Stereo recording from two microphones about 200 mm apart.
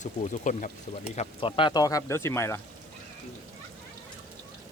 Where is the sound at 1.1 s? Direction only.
25° left (ahead or behind).